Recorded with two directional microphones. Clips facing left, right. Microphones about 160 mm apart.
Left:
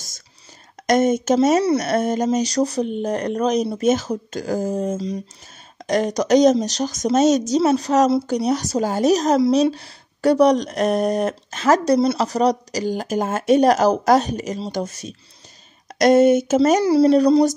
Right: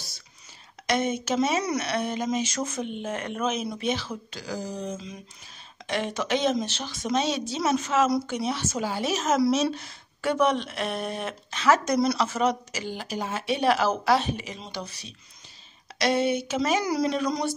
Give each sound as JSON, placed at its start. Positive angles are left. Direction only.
{"t": 0.8, "sound": "speech", "side_deg": 45}
{"t": 1.6, "sound": "speech", "side_deg": 30}
{"t": 1.9, "sound": "speech", "side_deg": 45}
{"t": 16.8, "sound": "speech", "side_deg": 30}